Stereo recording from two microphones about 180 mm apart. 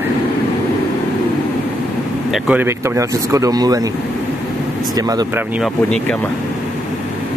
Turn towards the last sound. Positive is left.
turn(degrees=5)  # may be behind; listen again after turning